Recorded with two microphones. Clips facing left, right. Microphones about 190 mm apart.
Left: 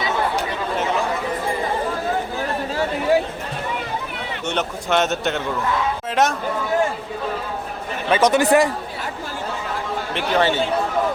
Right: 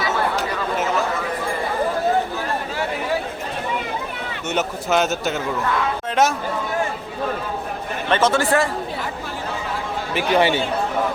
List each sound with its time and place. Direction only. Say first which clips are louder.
4.4 s a man's voice: right 1 dB; 5° right (ahead or behind)
8.1 s a man's voice: left 3 dB; 15° left (ahead or behind)
10.2 s a man's voice: right 2 dB; 15° right (ahead or behind)